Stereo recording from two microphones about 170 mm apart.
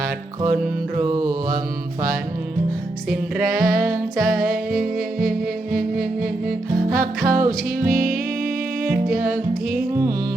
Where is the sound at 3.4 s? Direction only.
55° right (ahead or behind).